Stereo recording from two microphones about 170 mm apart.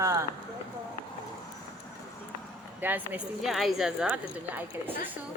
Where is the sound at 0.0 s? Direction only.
15° right (ahead or behind).